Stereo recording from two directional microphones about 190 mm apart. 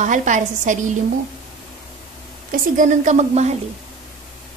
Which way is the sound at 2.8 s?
40° right (ahead or behind).